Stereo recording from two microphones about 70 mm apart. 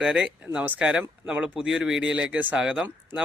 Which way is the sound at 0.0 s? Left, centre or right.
Centre.